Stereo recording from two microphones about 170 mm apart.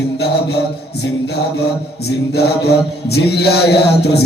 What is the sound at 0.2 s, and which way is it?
Mantra, 75° left (ahead or behind).